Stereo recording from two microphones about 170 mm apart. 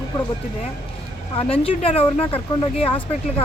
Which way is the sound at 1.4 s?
35° left (ahead or behind).